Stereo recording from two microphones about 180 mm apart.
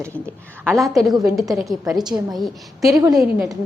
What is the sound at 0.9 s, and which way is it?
A woman's voice, centre (ahead or behind).